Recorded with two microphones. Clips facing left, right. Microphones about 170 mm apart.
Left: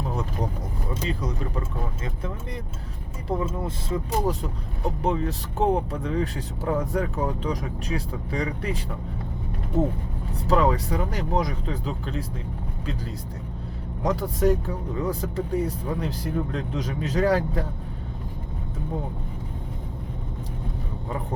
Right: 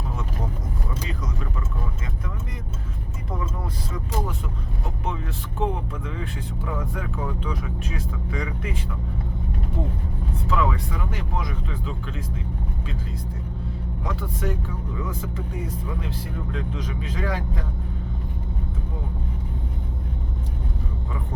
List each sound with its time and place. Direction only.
3.8 s speech: 30° left (ahead or behind)
14.0 s speech: 40° left (ahead or behind)